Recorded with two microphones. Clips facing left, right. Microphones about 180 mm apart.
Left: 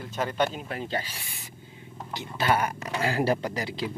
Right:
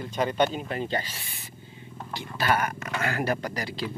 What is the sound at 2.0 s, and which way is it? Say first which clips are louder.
Speech: even; 15° left (ahead or behind).